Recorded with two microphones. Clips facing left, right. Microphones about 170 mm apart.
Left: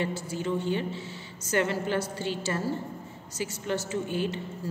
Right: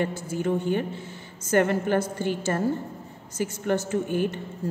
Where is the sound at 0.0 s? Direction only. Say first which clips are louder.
Right 4 dB; 55° right (ahead or behind).